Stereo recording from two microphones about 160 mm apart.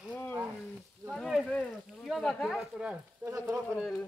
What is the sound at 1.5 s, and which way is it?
Speech, 5° left (ahead or behind).